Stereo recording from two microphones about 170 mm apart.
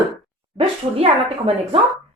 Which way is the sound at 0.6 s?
35° right (ahead or behind).